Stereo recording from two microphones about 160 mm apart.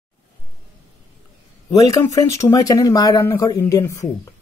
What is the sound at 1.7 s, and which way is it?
Speech, 20° left (ahead or behind).